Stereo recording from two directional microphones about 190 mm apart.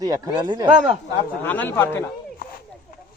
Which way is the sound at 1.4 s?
10° left (ahead or behind).